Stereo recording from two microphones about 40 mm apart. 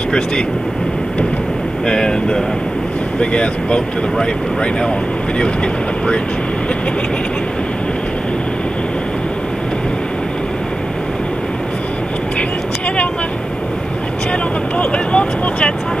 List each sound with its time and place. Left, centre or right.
1.9 s speech: centre
14.8 s speech: left